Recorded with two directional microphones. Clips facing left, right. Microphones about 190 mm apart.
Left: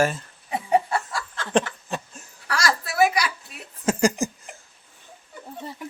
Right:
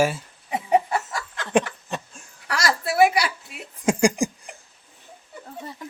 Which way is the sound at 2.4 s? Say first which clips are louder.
Right 1 dB; 25° right (ahead or behind).